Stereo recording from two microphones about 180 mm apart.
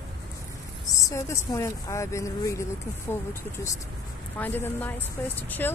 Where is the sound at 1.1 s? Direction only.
15° left (ahead or behind).